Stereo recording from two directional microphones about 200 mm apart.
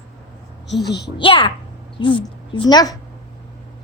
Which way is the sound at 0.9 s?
55° left (ahead or behind).